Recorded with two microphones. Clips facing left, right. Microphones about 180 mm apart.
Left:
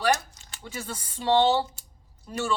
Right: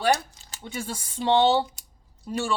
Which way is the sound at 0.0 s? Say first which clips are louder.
Right 2 dB; 35° right (ahead or behind).